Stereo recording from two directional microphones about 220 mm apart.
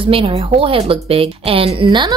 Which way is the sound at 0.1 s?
25° right (ahead or behind).